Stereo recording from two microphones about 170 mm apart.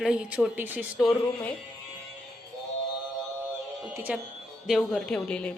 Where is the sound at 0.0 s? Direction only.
5° right (ahead or behind).